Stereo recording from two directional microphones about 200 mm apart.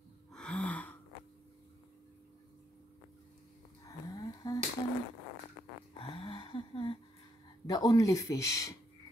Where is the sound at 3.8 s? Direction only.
15° left (ahead or behind).